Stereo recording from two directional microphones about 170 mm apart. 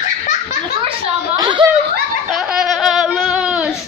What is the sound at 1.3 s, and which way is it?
Snicker, 20° right (ahead or behind).